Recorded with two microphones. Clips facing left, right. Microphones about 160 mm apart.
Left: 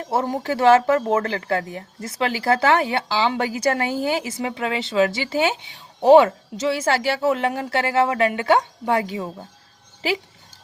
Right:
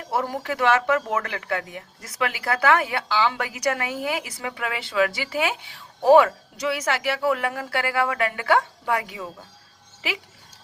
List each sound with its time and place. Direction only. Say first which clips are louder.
0.0 s speech: left 3 dB; 25° left (ahead or behind)